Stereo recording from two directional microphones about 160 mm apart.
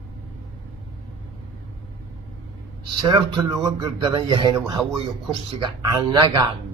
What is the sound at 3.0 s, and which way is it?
A man's voice, 25° right (ahead or behind).